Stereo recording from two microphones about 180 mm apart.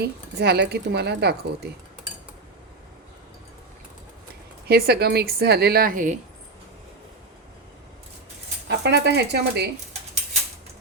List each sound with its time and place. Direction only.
0.0 s speech: 65° right (ahead or behind)
4.7 s speech: 60° right (ahead or behind)
8.6 s speech: 65° right (ahead or behind)